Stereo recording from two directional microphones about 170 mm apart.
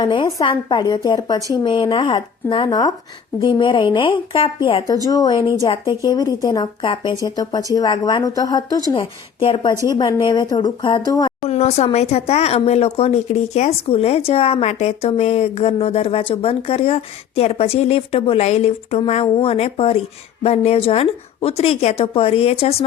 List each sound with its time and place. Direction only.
0.0 s a woman's voice: 25° left (ahead or behind)
9.9 s a woman's voice: 20° left (ahead or behind)
11.3 s speech: 40° left (ahead or behind)